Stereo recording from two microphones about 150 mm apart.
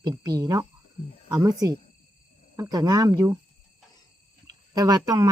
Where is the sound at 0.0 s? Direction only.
25° right (ahead or behind).